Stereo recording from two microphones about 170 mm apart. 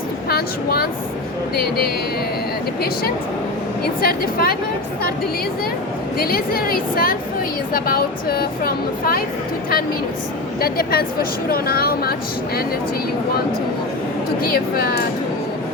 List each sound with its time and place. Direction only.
0.3 s a woman's voice: 65° left (ahead or behind)
4.0 s speech: 60° left (ahead or behind)
6.1 s speech: 60° left (ahead or behind)
10.6 s speech: 65° left (ahead or behind)
14.4 s speech: 60° left (ahead or behind)